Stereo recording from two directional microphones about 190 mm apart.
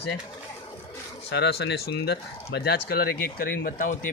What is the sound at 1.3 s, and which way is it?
Speech, 60° left (ahead or behind).